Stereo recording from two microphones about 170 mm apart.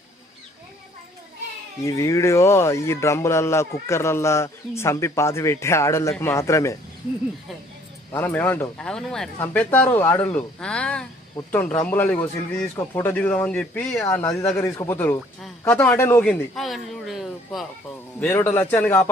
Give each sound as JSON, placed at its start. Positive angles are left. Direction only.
{"t": 1.8, "sound": "speech", "side_deg": 15}
{"t": 8.1, "sound": "speech", "side_deg": 10}
{"t": 14.0, "sound": "a man's voice", "side_deg": 20}
{"t": 18.2, "sound": "speech", "side_deg": 15}